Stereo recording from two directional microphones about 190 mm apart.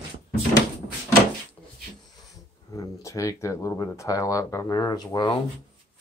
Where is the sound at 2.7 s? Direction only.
15° left (ahead or behind).